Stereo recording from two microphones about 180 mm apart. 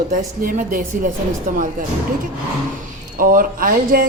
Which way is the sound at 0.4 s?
50° right (ahead or behind).